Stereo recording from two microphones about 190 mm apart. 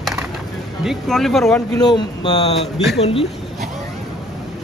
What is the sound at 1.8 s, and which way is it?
Speech, 20° left (ahead or behind).